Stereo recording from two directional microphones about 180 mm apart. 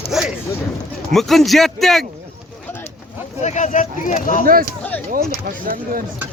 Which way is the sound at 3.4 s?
40° left (ahead or behind).